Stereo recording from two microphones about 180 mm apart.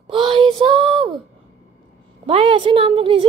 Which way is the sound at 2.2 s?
30° right (ahead or behind).